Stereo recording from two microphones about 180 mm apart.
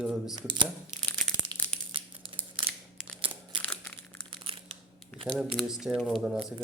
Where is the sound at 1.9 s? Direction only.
30° right (ahead or behind).